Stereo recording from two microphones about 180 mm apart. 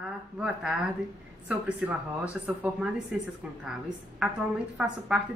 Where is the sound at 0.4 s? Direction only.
5° right (ahead or behind).